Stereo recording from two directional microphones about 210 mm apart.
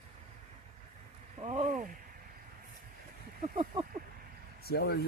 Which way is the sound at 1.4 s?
35° right (ahead or behind).